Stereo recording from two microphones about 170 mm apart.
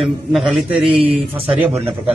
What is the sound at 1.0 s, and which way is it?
Speech, 35° right (ahead or behind).